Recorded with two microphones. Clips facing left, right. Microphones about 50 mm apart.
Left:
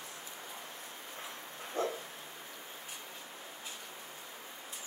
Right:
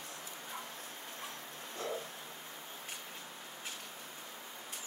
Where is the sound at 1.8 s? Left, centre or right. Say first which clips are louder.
Left 6 dB; left.